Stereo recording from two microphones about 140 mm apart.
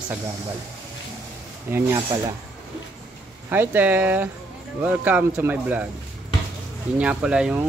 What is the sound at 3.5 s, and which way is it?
Speech, 15° right (ahead or behind).